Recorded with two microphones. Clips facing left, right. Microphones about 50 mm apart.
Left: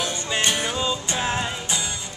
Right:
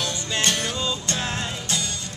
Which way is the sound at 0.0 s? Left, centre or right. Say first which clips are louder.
Left 1 dB; centre.